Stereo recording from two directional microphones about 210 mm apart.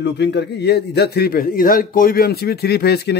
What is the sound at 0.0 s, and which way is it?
A man's voice, 55° left (ahead or behind).